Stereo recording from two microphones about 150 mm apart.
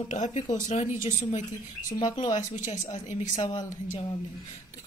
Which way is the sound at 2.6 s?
55° left (ahead or behind).